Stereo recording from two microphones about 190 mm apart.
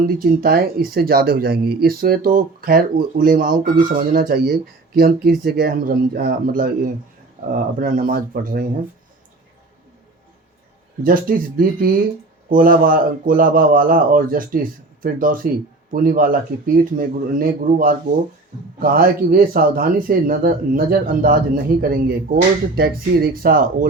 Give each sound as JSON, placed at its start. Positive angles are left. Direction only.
{"t": 0.2, "sound": "speech", "side_deg": -50}
{"t": 11.0, "sound": "speech", "side_deg": -45}